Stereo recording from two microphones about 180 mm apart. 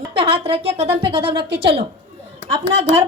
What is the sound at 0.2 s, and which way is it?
Speech, 30° right (ahead or behind).